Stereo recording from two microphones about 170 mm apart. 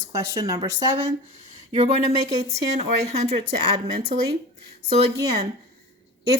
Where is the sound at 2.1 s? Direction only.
25° right (ahead or behind).